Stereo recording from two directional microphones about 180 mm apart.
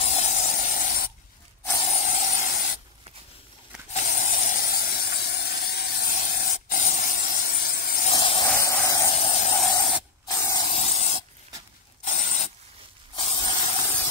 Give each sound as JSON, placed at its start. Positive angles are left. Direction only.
{"t": 0.0, "sound": "spray", "side_deg": 40}
{"t": 1.8, "sound": "spray", "side_deg": 40}
{"t": 4.0, "sound": "hiss", "side_deg": 45}
{"t": 8.1, "sound": "a sound", "side_deg": 30}
{"t": 8.5, "sound": "a sound", "side_deg": 15}
{"t": 9.1, "sound": "hiss", "side_deg": 35}
{"t": 10.2, "sound": "spray", "side_deg": 20}
{"t": 10.7, "sound": "spray", "side_deg": 35}
{"t": 12.0, "sound": "rub", "side_deg": 45}
{"t": 13.1, "sound": "spray", "side_deg": 30}